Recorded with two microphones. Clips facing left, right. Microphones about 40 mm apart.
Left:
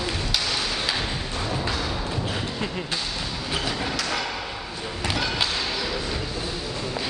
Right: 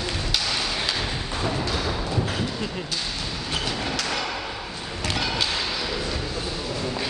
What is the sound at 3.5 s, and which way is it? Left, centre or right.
Train, centre.